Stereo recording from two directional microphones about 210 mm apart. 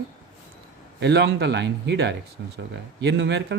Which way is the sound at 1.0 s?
55° right (ahead or behind).